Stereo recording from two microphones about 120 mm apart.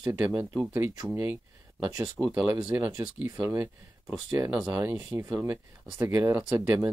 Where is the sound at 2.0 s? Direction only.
5° right (ahead or behind).